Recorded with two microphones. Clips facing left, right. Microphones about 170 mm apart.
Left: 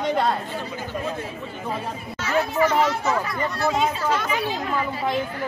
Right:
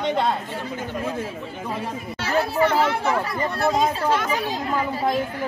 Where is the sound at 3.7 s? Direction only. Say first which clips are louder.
Right 2 dB; 35° right (ahead or behind).